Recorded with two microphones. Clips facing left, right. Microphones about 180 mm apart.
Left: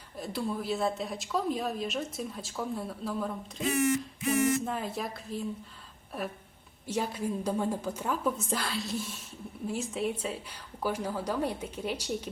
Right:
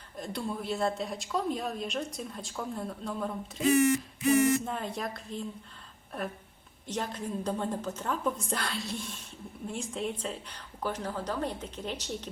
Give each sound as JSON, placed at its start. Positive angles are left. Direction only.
{"t": 0.2, "sound": "a woman's voice", "side_deg": 5}
{"t": 3.7, "sound": "a sound", "side_deg": -35}
{"t": 4.6, "sound": "a woman's voice", "side_deg": 5}
{"t": 6.8, "sound": "a woman's voice", "side_deg": 10}